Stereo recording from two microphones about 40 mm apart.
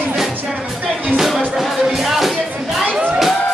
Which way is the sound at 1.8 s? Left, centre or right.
Centre.